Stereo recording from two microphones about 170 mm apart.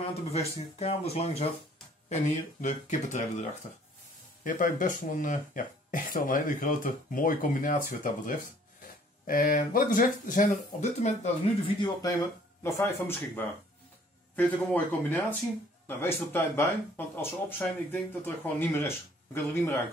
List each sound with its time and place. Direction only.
0.3 s speech: 35° left (ahead or behind)
4.5 s speech: 50° left (ahead or behind); by 13.2 s 15° left (ahead or behind)
14.3 s speech: 10° left (ahead or behind)